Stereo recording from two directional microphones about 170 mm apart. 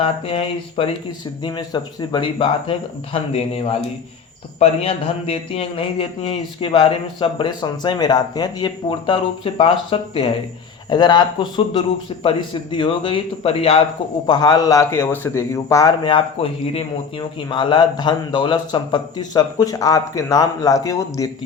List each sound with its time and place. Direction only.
0.0 s a man's voice: 35° left (ahead or behind)
14.3 s a man's voice: 25° left (ahead or behind)